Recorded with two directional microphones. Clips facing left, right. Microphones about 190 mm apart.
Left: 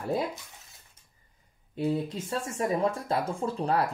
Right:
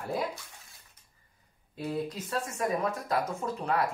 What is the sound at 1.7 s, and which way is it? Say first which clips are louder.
Speech: left 4 dB; 25° left (ahead or behind).